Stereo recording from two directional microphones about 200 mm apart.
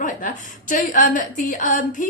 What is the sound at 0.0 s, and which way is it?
A woman's voice, 40° left (ahead or behind).